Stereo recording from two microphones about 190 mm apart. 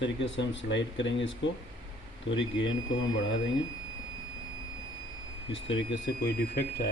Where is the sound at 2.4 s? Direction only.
75° left (ahead or behind).